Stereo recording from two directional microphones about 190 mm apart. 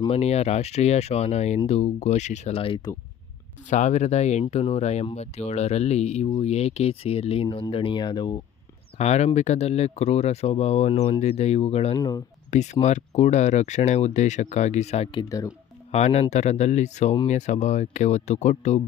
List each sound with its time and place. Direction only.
0.0 s speech: 35° left (ahead or behind)
3.7 s speech: 40° left (ahead or behind)
8.9 s speech: 35° left (ahead or behind)